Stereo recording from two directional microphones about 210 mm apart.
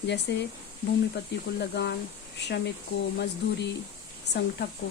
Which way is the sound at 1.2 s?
50° left (ahead or behind).